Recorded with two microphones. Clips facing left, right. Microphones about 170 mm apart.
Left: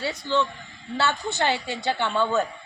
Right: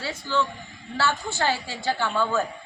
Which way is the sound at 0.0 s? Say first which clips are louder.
Left 2 dB; 20° left (ahead or behind).